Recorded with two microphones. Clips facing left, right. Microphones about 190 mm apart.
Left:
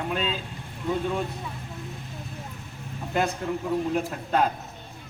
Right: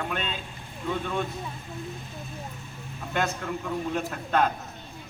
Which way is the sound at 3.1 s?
35° left (ahead or behind).